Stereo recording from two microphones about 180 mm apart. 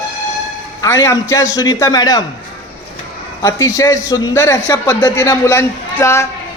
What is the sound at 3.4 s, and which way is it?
A man's voice, 15° left (ahead or behind).